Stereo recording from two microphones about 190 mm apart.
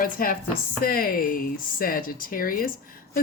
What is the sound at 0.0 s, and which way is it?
Speech, 50° left (ahead or behind).